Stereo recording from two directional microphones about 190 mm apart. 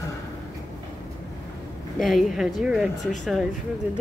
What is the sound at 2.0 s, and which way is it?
A woman's voice, centre (ahead or behind).